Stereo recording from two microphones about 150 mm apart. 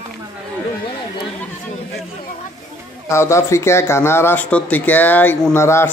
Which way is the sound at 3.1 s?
20° left (ahead or behind).